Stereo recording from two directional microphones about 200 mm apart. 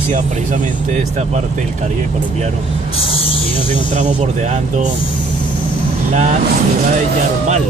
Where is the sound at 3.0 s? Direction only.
30° left (ahead or behind).